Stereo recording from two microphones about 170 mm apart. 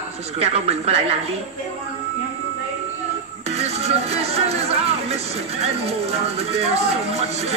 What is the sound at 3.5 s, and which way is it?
Speech, 40° right (ahead or behind).